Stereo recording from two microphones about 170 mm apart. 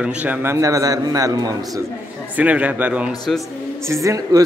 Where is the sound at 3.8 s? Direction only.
20° right (ahead or behind).